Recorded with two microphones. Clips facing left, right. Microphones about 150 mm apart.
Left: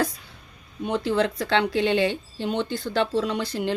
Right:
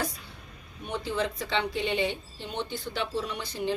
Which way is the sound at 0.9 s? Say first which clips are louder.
Left 7 dB; 90° left.